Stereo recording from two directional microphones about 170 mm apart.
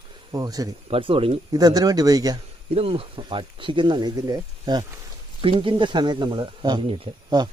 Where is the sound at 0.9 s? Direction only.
30° right (ahead or behind).